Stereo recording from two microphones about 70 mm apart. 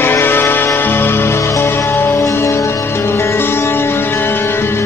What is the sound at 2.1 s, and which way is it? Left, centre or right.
Music, left.